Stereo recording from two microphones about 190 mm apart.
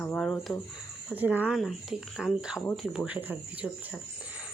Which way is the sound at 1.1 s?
10° right (ahead or behind).